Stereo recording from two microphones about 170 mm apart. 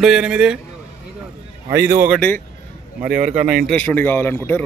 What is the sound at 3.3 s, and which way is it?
Speech, 45° right (ahead or behind).